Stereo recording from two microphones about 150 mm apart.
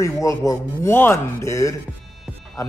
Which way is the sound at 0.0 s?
20° left (ahead or behind).